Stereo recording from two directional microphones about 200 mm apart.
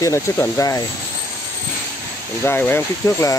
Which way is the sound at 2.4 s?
10° left (ahead or behind).